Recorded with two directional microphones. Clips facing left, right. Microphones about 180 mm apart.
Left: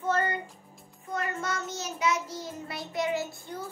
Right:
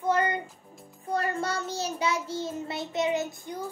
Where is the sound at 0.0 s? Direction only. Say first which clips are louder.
Right 2 dB; 15° right (ahead or behind).